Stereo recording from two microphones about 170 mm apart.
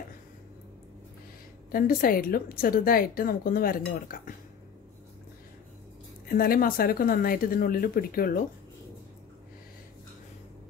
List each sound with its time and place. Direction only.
1.7 s a woman's voice: 55° left (ahead or behind)
6.3 s a woman's voice: 60° left (ahead or behind)